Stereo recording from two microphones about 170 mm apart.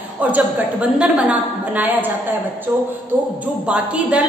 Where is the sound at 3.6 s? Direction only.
5° right (ahead or behind).